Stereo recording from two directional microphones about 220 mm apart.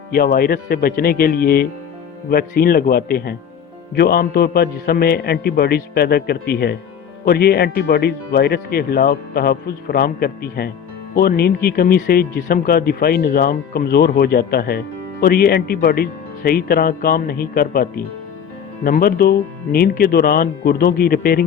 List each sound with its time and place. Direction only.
0.1 s speech: 45° left (ahead or behind)